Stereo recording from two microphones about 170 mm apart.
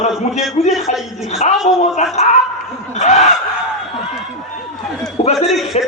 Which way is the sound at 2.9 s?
40° left (ahead or behind).